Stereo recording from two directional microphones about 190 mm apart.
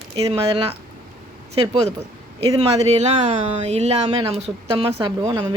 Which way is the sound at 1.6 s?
30° right (ahead or behind).